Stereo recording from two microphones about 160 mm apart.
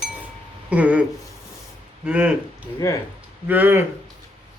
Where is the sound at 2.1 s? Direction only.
10° right (ahead or behind).